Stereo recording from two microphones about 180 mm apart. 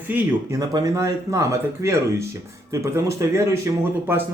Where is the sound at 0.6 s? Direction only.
20° right (ahead or behind).